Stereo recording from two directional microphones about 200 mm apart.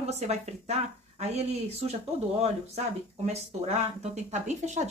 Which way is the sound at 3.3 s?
35° right (ahead or behind).